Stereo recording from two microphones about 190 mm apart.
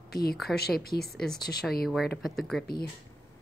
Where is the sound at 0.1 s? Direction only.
55° left (ahead or behind).